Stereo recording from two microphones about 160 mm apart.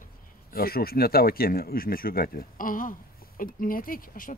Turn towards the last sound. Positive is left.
turn(degrees=60)  # may be behind; listen again after turning